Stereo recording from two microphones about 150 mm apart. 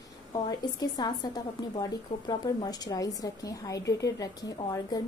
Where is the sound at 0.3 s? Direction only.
25° left (ahead or behind).